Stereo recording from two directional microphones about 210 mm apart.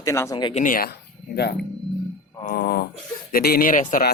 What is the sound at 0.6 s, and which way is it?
Speech, 40° left (ahead or behind).